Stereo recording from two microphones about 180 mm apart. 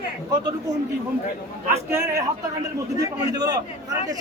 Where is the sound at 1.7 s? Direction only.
15° right (ahead or behind).